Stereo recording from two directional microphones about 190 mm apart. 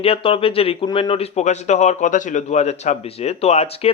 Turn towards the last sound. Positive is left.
turn(degrees=35)  # may be behind; listen again after turning